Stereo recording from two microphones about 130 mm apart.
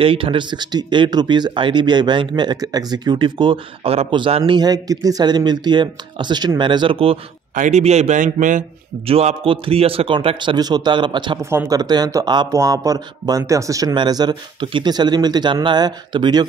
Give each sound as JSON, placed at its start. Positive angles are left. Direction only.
{"t": 0.0, "sound": "speech", "side_deg": -45}
{"t": 7.5, "sound": "a man's voice", "side_deg": -65}
{"t": 9.0, "sound": "a man's voice", "side_deg": -55}
{"t": 11.5, "sound": "speech", "side_deg": -25}